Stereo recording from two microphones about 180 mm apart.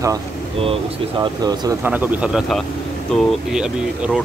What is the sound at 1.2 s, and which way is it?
Speech, 20° right (ahead or behind).